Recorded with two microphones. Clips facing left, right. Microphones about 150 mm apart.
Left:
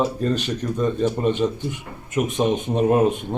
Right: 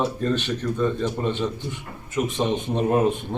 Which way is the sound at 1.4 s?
20° left (ahead or behind).